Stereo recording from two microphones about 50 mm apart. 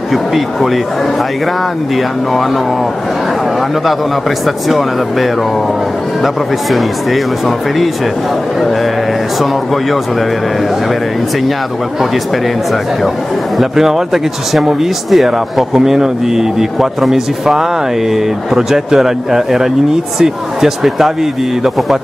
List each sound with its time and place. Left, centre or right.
0.1 s speech: centre
4.6 s speech: centre
13.6 s speech: centre